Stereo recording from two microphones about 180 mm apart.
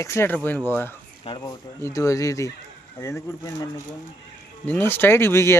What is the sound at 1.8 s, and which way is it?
Speech, 15° left (ahead or behind).